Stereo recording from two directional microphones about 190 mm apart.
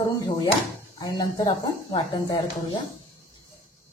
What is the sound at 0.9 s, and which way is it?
Speech, 20° left (ahead or behind).